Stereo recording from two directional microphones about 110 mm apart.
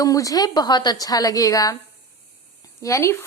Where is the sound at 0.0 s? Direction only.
30° left (ahead or behind).